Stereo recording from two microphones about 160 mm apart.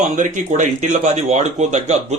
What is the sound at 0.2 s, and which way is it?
Speech, 50° right (ahead or behind).